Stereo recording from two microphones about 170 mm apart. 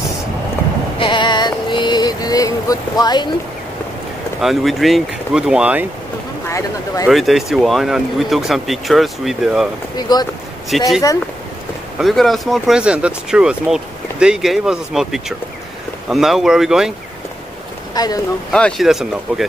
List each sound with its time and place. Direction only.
0.9 s a sound: 30° left (ahead or behind)
4.4 s speech: centre (ahead or behind)
7.1 s speech: centre (ahead or behind)
9.9 s speech: 25° left (ahead or behind)
10.7 s speech: centre (ahead or behind)
12.0 s speech: centre (ahead or behind)
17.9 s speech: 25° left (ahead or behind)
18.5 s speech: 5° left (ahead or behind)